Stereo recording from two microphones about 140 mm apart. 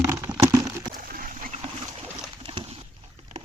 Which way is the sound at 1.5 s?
45° right (ahead or behind).